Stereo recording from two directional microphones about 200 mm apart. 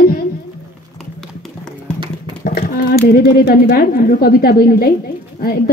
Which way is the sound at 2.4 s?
45° left (ahead or behind).